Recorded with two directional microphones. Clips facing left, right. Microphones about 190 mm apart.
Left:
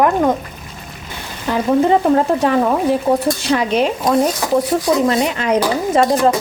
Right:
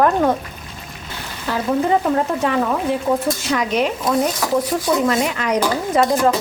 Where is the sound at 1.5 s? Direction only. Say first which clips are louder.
Left 4 dB; 20° left (ahead or behind).